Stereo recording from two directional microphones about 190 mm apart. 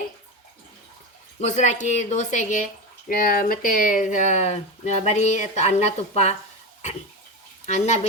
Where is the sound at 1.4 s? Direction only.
40° left (ahead or behind).